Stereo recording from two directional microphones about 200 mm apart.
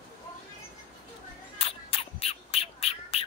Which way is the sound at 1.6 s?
30° left (ahead or behind).